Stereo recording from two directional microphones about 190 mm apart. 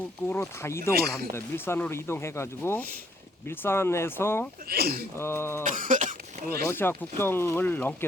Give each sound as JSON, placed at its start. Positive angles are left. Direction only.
{"t": 0.3, "sound": "speech", "side_deg": 10}
{"t": 4.7, "sound": "speech", "side_deg": -55}
{"t": 5.1, "sound": "speech", "side_deg": 10}
{"t": 5.6, "sound": "throat clearing", "side_deg": -45}
{"t": 6.7, "sound": "speech", "side_deg": 10}